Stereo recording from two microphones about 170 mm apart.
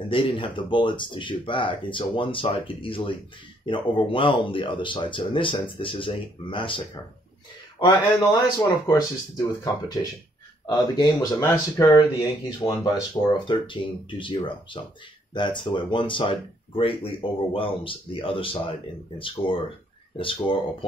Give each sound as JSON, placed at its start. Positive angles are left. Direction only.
{"t": 0.1, "sound": "speech", "side_deg": 30}
{"t": 7.8, "sound": "speech", "side_deg": 20}
{"t": 11.0, "sound": "speech", "side_deg": 20}